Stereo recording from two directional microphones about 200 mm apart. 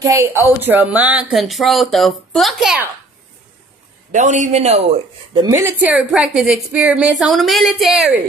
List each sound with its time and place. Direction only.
0.0 s speech: 15° right (ahead or behind)
4.1 s a man's voice: 35° right (ahead or behind)
5.7 s speech: 10° right (ahead or behind)